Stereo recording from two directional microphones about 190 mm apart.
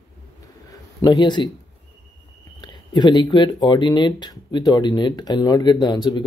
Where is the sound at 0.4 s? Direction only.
20° left (ahead or behind).